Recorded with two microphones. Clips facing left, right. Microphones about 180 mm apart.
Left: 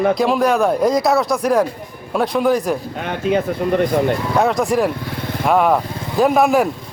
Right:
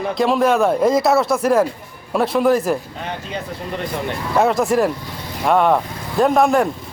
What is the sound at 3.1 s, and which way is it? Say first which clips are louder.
Speech: left 11 dB; 50° left (ahead or behind).